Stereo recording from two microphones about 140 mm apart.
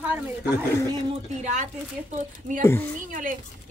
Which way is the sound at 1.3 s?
55° right (ahead or behind).